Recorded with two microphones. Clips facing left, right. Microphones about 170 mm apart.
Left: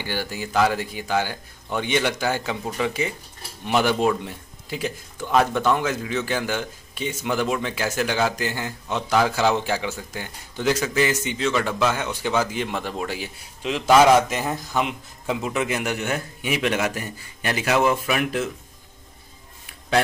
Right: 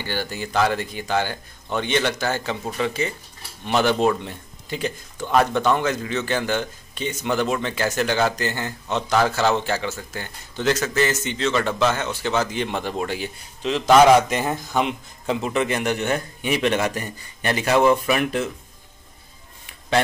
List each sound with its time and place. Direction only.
0.0 s a man's voice: 10° left (ahead or behind)